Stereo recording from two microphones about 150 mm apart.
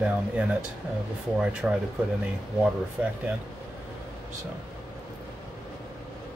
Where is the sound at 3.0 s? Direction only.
10° right (ahead or behind).